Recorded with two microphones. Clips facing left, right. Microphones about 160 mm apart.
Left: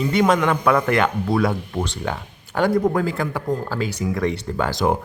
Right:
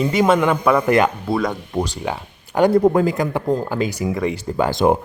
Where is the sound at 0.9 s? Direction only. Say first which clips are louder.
Right 4 dB; 20° right (ahead or behind).